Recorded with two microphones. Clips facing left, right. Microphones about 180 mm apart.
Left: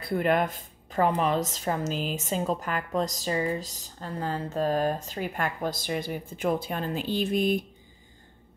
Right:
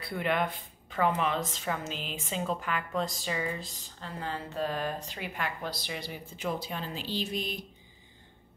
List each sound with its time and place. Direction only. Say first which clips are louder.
0.0 s a woman's voice: left 5 dB; 45° left (ahead or behind)